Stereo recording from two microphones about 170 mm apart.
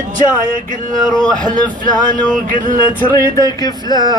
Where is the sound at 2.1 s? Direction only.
50° right (ahead or behind).